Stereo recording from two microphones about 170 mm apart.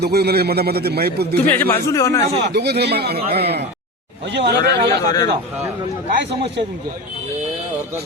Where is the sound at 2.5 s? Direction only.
75° right (ahead or behind).